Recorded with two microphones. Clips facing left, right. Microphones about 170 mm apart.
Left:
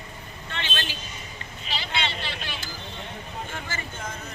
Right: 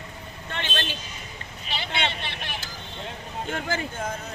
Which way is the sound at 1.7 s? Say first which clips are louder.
Right 1 dB; 55° right (ahead or behind).